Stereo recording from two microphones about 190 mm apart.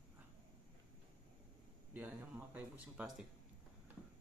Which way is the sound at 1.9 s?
10° right (ahead or behind).